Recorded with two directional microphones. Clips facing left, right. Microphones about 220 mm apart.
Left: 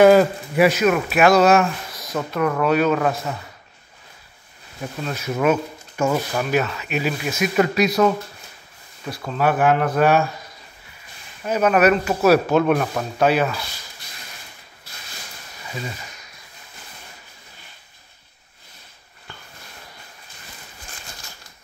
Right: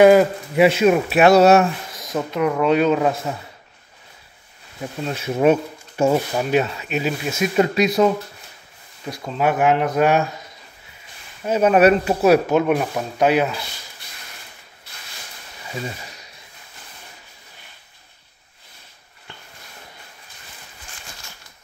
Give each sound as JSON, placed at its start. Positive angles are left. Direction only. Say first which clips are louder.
{"t": 0.0, "sound": "speech", "louder": "right 1 dB", "side_deg": -15}
{"t": 2.1, "sound": "speech", "louder": "right 1 dB", "side_deg": -15}
{"t": 5.0, "sound": "speech", "louder": "right 3 dB", "side_deg": -25}
{"t": 9.2, "sound": "speech", "louder": "even", "side_deg": -20}
{"t": 11.4, "sound": "speech", "louder": "right 2 dB", "side_deg": -25}
{"t": 12.3, "sound": "speech", "louder": "even", "side_deg": -10}